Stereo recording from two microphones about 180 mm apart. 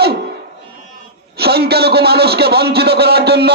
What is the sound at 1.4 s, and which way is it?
A man's voice, 60° right (ahead or behind).